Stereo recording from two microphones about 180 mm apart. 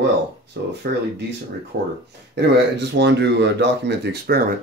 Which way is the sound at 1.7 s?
50° right (ahead or behind).